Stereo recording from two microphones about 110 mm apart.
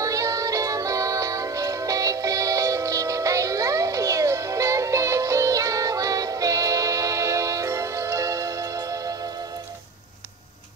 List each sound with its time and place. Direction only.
0.0 s music: 30° right (ahead or behind)